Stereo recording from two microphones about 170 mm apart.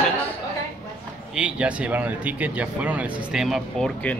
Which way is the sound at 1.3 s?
5° right (ahead or behind).